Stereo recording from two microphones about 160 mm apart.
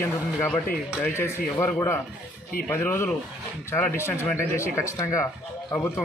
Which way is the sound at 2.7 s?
15° left (ahead or behind).